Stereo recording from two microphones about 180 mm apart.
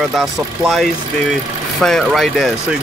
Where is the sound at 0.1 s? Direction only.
Centre (ahead or behind).